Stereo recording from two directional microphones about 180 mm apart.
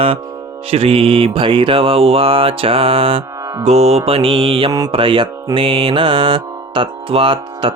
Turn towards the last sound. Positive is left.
turn(degrees=-30)  # may be behind; listen again after turning